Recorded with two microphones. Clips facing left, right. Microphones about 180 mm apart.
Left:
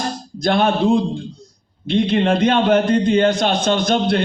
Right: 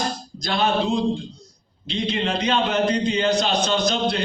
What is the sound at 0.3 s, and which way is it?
A man's voice, 55° left (ahead or behind).